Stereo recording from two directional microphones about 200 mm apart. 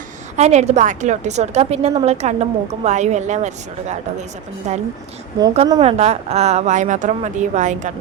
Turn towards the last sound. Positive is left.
turn(degrees=-35)  # may be behind; listen again after turning